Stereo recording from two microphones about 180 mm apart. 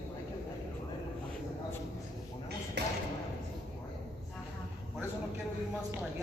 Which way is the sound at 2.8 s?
65° right (ahead or behind).